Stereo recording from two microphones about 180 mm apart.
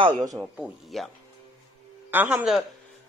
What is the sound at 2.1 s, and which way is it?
Speech, 5° right (ahead or behind).